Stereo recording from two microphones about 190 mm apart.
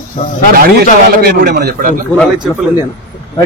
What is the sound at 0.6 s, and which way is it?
A man's voice, 50° right (ahead or behind).